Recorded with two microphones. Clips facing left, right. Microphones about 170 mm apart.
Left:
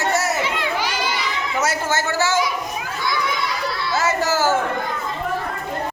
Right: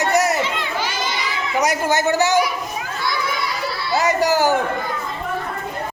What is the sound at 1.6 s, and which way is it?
Speech, 15° right (ahead or behind).